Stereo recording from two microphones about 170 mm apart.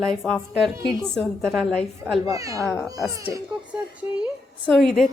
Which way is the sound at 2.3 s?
20° right (ahead or behind).